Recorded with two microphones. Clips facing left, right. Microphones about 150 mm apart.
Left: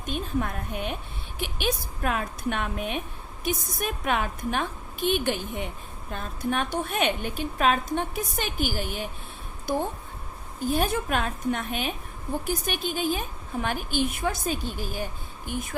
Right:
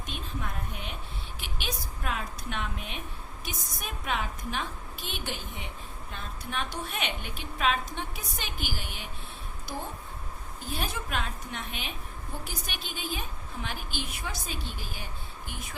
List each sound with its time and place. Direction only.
0.0 s a woman's voice: 50° left (ahead or behind)
10.8 s a woman's voice: 50° left (ahead or behind)